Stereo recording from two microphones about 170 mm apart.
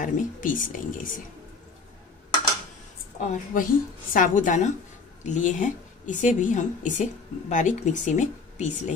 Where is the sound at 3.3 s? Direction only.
50° left (ahead or behind).